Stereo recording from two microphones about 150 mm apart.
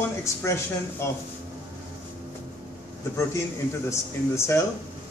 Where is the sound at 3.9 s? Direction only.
20° left (ahead or behind).